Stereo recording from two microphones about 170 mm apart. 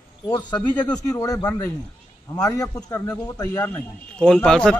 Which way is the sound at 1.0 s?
20° left (ahead or behind).